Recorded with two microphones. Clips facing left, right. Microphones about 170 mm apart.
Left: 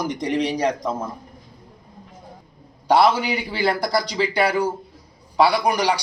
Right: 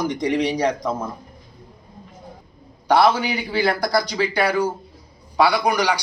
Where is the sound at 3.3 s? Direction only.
25° left (ahead or behind).